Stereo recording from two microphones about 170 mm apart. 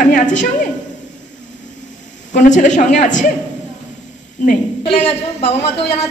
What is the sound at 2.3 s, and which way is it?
Speech, 50° left (ahead or behind).